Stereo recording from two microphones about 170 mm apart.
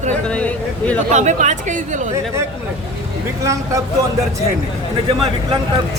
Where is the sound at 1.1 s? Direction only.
45° right (ahead or behind).